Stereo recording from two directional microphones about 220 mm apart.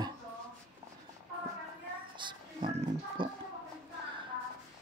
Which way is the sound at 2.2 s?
25° right (ahead or behind).